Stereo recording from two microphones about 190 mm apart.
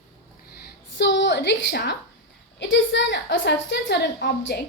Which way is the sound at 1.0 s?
65° left (ahead or behind).